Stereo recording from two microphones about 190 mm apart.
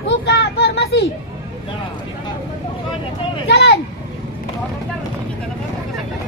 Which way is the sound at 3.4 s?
60° left (ahead or behind).